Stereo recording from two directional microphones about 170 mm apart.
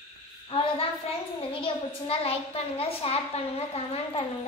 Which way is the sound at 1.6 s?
35° left (ahead or behind).